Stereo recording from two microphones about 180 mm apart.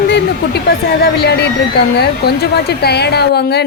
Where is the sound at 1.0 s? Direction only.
65° left (ahead or behind).